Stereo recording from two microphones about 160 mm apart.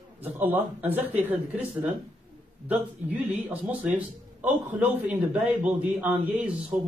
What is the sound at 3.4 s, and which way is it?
A man's voice, 10° right (ahead or behind).